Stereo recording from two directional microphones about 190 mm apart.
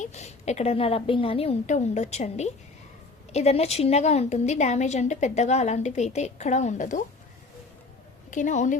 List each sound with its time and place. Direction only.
0.0 s a woman's voice: 35° left (ahead or behind)
8.3 s a woman's voice: 40° left (ahead or behind)